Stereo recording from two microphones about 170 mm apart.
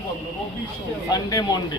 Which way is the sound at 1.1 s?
20° left (ahead or behind).